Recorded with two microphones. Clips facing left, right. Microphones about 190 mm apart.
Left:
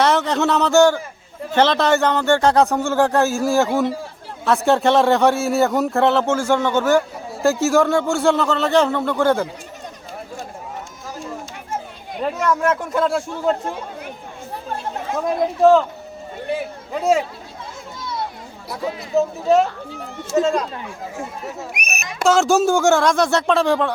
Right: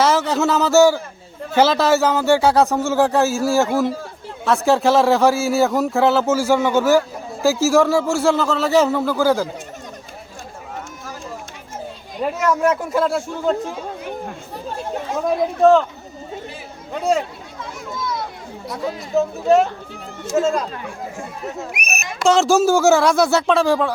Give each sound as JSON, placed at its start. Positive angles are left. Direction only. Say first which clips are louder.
{"t": 0.0, "sound": "a man's voice", "louder": "even", "side_deg": 0}
{"t": 12.2, "sound": "a man's voice", "louder": "right 1 dB", "side_deg": -5}
{"t": 15.6, "sound": "a man's voice", "louder": "even", "side_deg": 0}
{"t": 16.9, "sound": "a man's voice", "louder": "left 1 dB", "side_deg": 5}
{"t": 17.9, "sound": "children playing", "louder": "right 5 dB", "side_deg": 30}
{"t": 18.7, "sound": "a man's voice", "louder": "even", "side_deg": 0}
{"t": 22.2, "sound": "a man's voice", "louder": "right 1 dB", "side_deg": 0}